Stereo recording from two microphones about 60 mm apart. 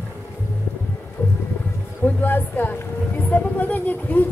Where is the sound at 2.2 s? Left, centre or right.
Left.